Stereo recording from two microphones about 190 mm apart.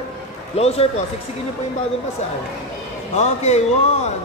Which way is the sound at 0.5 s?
30° left (ahead or behind).